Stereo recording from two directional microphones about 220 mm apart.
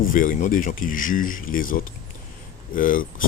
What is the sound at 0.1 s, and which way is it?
Speech, 40° left (ahead or behind).